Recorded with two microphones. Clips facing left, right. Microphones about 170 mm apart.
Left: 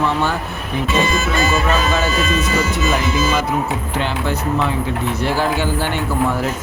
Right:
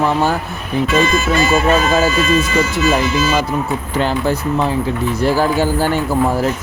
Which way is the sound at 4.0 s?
40° right (ahead or behind).